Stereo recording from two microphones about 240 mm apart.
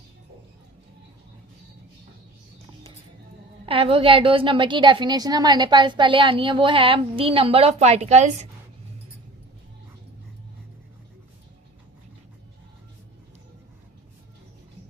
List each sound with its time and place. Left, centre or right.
3.7 s a woman's voice: right